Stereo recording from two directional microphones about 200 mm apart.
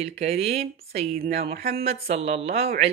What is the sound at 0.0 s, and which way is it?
A woman's voice, 30° right (ahead or behind).